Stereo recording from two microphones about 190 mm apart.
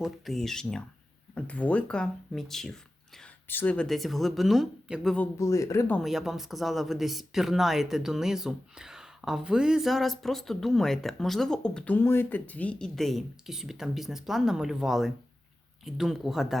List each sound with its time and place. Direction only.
0.0 s speech: centre (ahead or behind)
6.0 s speech: centre (ahead or behind)